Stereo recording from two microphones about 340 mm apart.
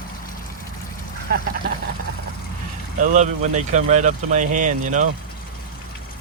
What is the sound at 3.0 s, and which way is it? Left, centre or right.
Speech, right.